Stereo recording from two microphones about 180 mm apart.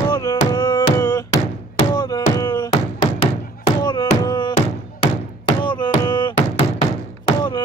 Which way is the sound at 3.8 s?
25° left (ahead or behind).